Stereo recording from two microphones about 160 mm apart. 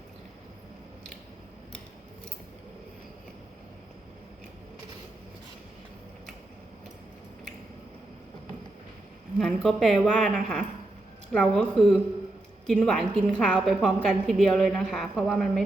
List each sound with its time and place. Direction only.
9.4 s a woman's voice: centre (ahead or behind)